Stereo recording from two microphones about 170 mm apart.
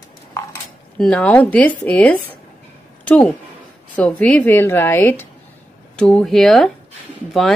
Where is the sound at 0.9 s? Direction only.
5° left (ahead or behind).